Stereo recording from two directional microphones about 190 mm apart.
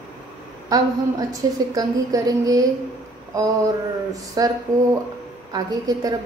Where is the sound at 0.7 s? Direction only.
20° right (ahead or behind).